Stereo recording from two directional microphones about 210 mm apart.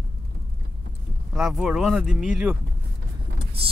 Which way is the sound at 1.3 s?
Centre (ahead or behind).